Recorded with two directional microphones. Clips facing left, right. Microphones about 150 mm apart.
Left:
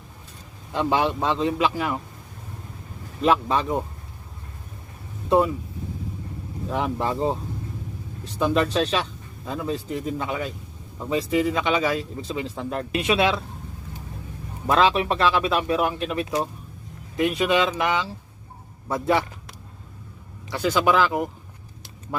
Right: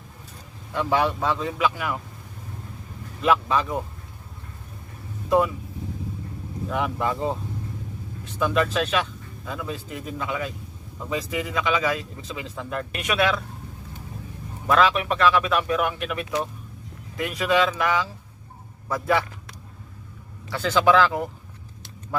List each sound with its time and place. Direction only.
0.7 s speech: 20° left (ahead or behind)
3.2 s a man's voice: 35° left (ahead or behind)
6.7 s a man's voice: 35° left (ahead or behind)
14.7 s a man's voice: 30° left (ahead or behind)
20.5 s speech: 10° left (ahead or behind)